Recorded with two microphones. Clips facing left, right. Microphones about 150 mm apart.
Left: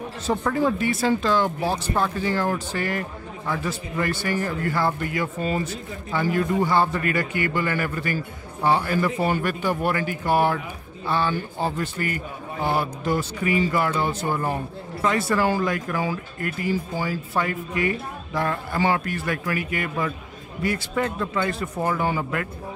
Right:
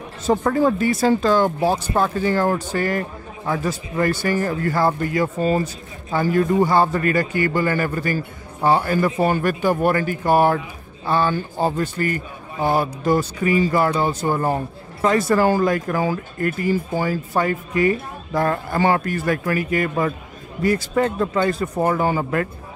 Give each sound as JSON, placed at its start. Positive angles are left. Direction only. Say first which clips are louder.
{"t": 0.3, "sound": "speech", "louder": "right 5 dB", "side_deg": -45}